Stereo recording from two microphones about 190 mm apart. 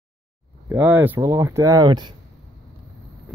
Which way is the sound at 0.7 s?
10° right (ahead or behind).